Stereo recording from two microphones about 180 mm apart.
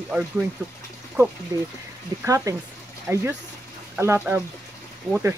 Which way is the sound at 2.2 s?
20° right (ahead or behind).